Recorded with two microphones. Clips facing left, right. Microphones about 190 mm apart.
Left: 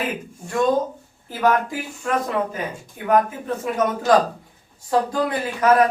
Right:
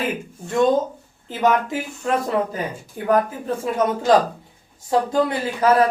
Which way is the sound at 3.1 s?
30° right (ahead or behind).